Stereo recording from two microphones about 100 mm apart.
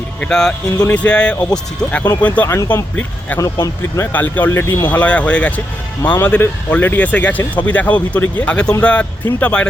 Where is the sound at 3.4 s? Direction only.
35° left (ahead or behind).